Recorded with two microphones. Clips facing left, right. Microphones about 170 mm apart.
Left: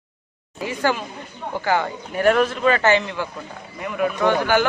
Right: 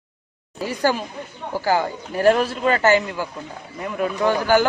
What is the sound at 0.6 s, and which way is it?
A man's voice, 40° right (ahead or behind).